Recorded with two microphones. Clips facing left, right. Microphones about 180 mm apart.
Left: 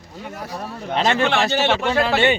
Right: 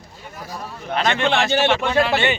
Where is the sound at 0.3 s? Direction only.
70° left (ahead or behind).